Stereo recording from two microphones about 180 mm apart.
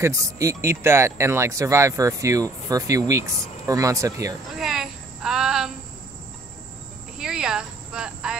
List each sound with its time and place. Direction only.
0.0 s speech: 20° right (ahead or behind)
4.6 s a sound: 5° right (ahead or behind)
7.2 s speech: 5° right (ahead or behind)